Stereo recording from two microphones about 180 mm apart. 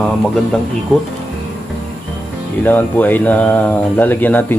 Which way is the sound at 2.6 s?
10° left (ahead or behind).